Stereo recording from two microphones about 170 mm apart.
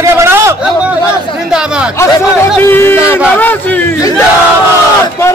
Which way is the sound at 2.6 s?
15° left (ahead or behind).